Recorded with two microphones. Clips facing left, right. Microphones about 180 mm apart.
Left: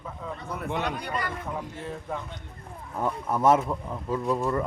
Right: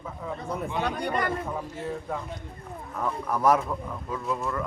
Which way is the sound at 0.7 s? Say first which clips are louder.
Left 1 dB; 65° left (ahead or behind).